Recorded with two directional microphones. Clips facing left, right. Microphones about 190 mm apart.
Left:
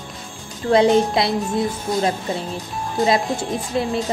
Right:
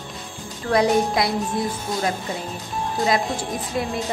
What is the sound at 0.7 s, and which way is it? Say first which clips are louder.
Music: left 4 dB; 25° left (ahead or behind).